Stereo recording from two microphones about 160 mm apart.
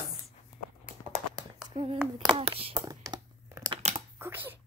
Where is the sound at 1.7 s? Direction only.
35° right (ahead or behind).